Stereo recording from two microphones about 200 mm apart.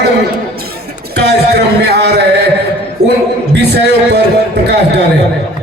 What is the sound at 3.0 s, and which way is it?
Speech, 20° right (ahead or behind).